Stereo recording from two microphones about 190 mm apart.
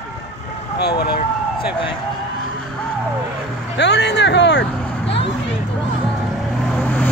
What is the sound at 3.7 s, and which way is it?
Speech, 65° left (ahead or behind).